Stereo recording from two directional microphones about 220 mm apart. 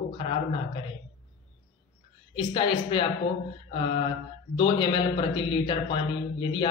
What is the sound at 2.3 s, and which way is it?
Speech, 25° left (ahead or behind).